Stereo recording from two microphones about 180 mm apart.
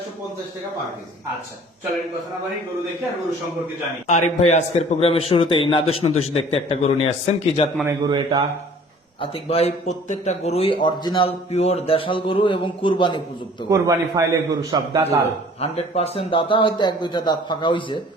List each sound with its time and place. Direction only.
4.0 s speech: 40° left (ahead or behind)
7.9 s a man's voice: 20° right (ahead or behind)
9.2 s a man's voice: 35° left (ahead or behind)
13.7 s a man's voice: 20° right (ahead or behind)
15.6 s a man's voice: 35° left (ahead or behind)